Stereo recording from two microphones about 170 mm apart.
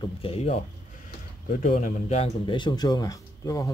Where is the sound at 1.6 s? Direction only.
50° left (ahead or behind).